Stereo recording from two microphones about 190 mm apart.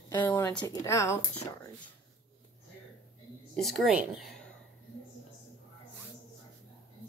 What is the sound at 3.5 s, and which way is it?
Speech, centre (ahead or behind).